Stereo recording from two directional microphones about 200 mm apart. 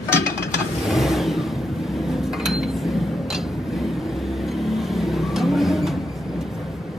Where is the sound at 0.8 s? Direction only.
Centre (ahead or behind).